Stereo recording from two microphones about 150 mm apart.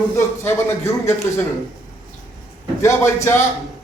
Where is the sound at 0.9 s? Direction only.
20° left (ahead or behind).